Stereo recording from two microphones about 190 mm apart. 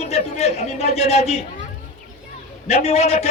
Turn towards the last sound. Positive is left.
turn(degrees=35)  # may be behind; listen again after turning